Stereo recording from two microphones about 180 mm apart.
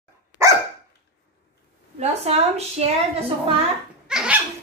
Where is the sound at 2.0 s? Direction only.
35° right (ahead or behind).